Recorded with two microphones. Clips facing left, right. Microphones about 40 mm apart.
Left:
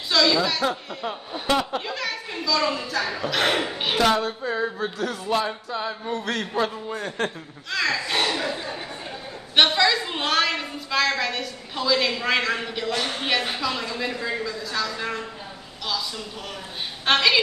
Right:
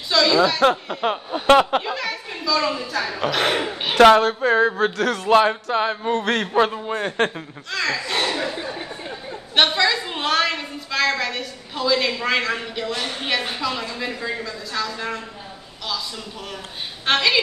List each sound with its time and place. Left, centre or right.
0.6 s speech: right
2.0 s a woman's voice: centre
3.9 s speech: right
7.7 s a woman's voice: centre
9.6 s a woman's voice: centre
17.0 s a woman's voice: centre